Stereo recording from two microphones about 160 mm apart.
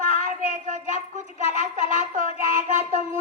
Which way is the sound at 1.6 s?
50° right (ahead or behind).